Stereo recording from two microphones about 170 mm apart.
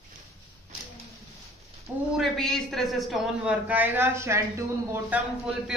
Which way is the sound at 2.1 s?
Centre (ahead or behind).